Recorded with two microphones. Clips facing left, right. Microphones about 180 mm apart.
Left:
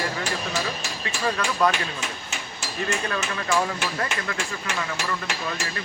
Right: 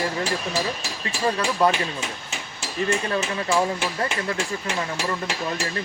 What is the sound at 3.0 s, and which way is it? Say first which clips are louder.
Speech: right 3 dB; 30° right (ahead or behind).